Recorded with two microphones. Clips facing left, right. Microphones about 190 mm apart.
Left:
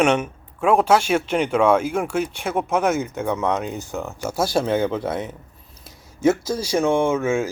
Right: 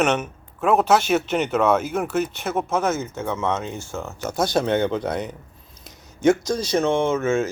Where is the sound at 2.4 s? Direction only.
10° left (ahead or behind).